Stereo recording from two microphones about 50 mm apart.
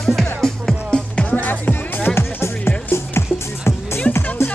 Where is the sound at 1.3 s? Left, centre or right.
Left.